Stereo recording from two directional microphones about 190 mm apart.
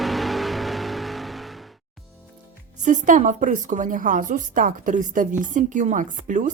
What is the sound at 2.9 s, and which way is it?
A woman's voice, 45° right (ahead or behind).